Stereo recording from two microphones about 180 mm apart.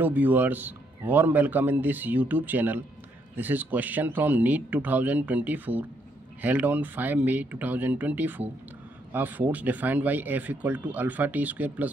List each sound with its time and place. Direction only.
0.0 s a man's voice: 10° right (ahead or behind)